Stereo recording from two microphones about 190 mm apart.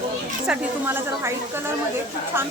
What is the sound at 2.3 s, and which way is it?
Speech, 10° right (ahead or behind).